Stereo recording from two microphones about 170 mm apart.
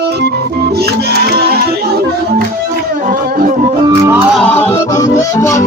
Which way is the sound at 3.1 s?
55° right (ahead or behind).